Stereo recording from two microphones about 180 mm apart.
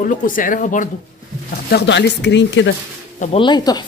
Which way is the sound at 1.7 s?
70° left (ahead or behind).